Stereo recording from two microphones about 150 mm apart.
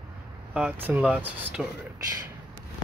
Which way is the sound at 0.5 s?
5° right (ahead or behind).